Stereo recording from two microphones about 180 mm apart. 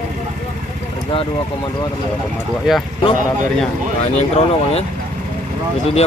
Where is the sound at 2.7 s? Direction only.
5° right (ahead or behind).